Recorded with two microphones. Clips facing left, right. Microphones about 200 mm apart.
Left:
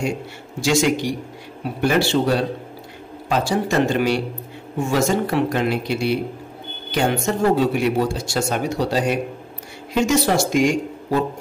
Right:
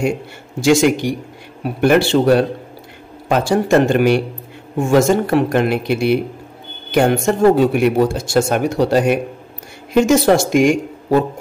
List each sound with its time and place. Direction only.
0.6 s speech: 55° right (ahead or behind)